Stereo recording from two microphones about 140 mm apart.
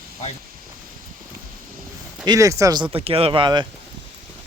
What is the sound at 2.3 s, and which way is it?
Speech, 25° right (ahead or behind).